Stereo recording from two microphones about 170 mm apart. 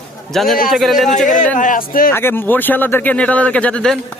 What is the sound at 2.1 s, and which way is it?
Speech, 15° left (ahead or behind).